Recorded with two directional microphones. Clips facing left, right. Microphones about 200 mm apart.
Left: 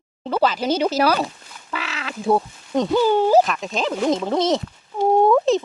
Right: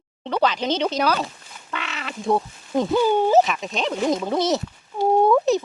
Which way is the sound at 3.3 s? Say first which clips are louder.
Left 1 dB; centre (ahead or behind).